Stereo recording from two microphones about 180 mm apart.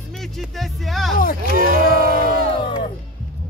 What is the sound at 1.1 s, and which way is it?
Speech, 50° left (ahead or behind).